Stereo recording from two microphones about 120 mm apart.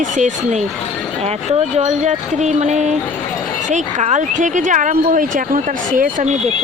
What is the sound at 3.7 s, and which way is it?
Speech, 85° right.